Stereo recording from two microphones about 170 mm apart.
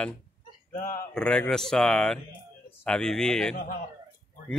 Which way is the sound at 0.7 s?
55° left (ahead or behind).